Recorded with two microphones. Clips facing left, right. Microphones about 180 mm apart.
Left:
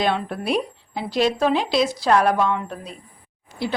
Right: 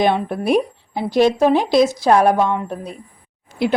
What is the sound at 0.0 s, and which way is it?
A woman's voice, 50° right (ahead or behind).